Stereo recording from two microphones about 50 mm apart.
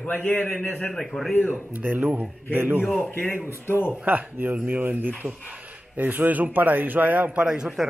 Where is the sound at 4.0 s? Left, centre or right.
Right.